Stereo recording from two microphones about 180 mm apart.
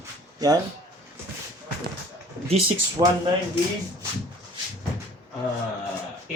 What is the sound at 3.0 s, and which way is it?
Speech, 35° right (ahead or behind).